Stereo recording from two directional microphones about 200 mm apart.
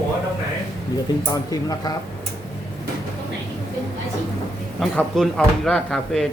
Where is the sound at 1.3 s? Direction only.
20° left (ahead or behind).